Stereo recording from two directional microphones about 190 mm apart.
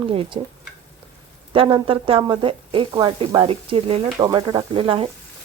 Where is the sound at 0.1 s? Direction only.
30° right (ahead or behind).